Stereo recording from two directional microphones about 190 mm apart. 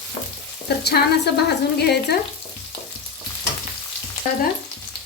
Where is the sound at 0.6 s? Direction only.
55° left (ahead or behind).